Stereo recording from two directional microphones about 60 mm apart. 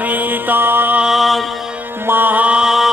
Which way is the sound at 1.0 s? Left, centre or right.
Centre.